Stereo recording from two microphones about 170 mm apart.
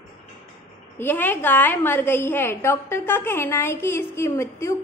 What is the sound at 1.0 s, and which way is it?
A woman's voice, 10° left (ahead or behind).